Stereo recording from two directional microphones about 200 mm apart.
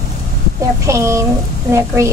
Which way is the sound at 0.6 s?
15° right (ahead or behind).